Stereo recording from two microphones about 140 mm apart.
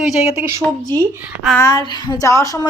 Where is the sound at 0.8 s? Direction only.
25° right (ahead or behind).